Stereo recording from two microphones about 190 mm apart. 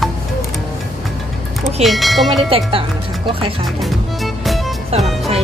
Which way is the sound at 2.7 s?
25° right (ahead or behind).